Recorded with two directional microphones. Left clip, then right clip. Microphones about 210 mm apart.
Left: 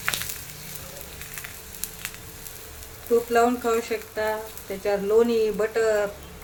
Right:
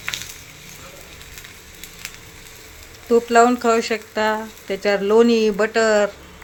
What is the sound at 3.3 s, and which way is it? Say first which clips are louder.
Speech: right 9 dB; 40° right (ahead or behind).